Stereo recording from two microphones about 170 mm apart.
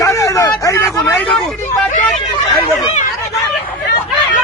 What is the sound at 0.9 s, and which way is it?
Vehicle, 10° left (ahead or behind).